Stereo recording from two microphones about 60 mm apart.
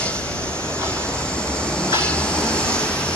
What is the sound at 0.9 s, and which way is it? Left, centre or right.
Vehicle, centre.